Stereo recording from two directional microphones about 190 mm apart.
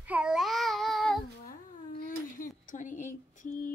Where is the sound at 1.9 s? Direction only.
45° left (ahead or behind).